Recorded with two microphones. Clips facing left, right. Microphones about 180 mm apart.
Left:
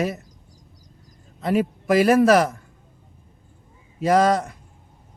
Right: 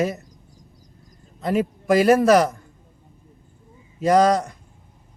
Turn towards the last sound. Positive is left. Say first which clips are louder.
# right 1 dB
turn(degrees=5)  # may be behind; listen again after turning